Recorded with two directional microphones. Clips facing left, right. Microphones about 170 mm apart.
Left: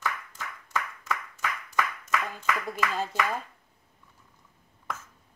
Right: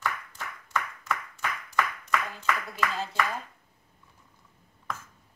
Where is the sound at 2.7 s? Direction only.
50° left (ahead or behind).